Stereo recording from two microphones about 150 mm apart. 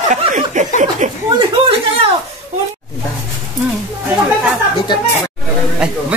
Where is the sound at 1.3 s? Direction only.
35° right (ahead or behind).